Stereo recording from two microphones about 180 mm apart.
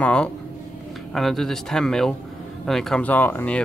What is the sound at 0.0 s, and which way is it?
Speech, 5° left (ahead or behind).